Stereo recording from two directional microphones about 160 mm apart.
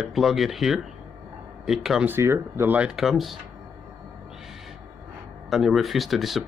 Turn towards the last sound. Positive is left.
turn(degrees=0)  # may be behind; listen again after turning